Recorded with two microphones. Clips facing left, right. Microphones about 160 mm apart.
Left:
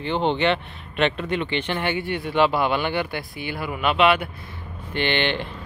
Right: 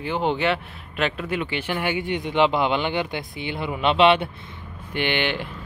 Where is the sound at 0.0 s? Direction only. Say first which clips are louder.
Left 1 dB; 5° right (ahead or behind); by 4.3 s 30° right (ahead or behind).